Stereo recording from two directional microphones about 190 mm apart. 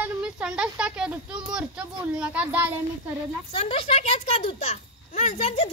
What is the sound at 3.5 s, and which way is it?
A child's voice, 30° left (ahead or behind).